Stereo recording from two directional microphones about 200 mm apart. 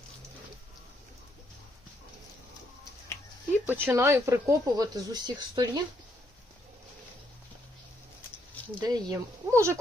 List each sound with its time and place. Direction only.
3.7 s speech: 10° right (ahead or behind)
8.8 s speech: 20° right (ahead or behind)